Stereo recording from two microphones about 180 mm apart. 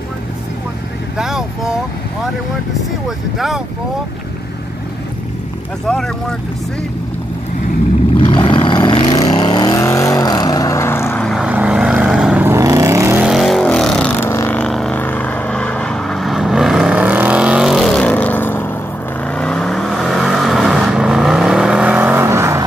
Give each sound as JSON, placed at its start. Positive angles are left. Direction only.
{"t": 1.1, "sound": "speech", "side_deg": 0}
{"t": 3.3, "sound": "speech", "side_deg": 0}
{"t": 5.9, "sound": "speech", "side_deg": 5}
{"t": 8.2, "sound": "vehicle", "side_deg": 25}
{"t": 11.2, "sound": "vehicle", "side_deg": -5}
{"t": 13.3, "sound": "vehicle", "side_deg": 0}